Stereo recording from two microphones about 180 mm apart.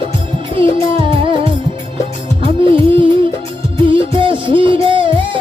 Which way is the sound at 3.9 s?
30° right (ahead or behind).